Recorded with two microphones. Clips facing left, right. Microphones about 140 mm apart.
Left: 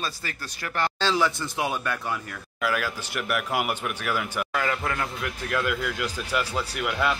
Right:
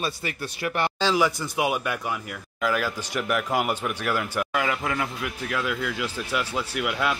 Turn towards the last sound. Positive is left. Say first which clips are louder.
# even
turn(degrees=-5)  # may be behind; listen again after turning